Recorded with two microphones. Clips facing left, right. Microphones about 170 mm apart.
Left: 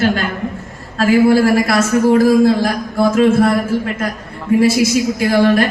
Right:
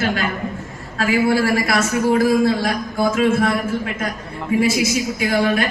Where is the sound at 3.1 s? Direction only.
40° left (ahead or behind).